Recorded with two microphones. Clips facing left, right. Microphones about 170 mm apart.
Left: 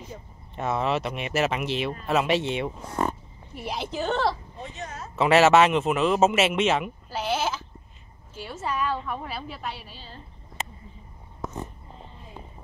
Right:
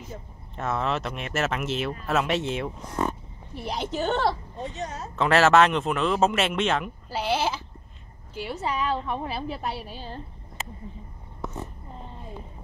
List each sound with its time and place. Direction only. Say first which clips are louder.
0.1 s speech: right 1 dB; centre (ahead or behind)
4.6 s speech: right 4 dB; 35° right (ahead or behind)
5.1 s speech: left 1 dB; 5° left (ahead or behind)
7.1 s a woman's voice: right 2 dB; 10° right (ahead or behind); by 9.9 s 35° right (ahead or behind)